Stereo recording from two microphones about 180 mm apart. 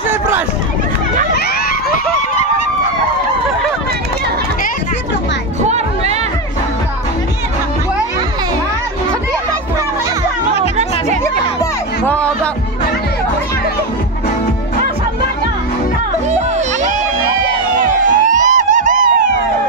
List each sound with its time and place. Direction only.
18.1 s emergency vehicle: 45° right (ahead or behind)